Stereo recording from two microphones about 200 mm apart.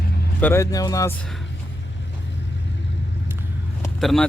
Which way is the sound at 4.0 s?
Centre (ahead or behind).